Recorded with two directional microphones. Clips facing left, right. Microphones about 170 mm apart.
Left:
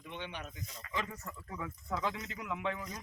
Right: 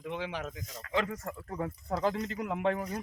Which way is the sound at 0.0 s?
90° right.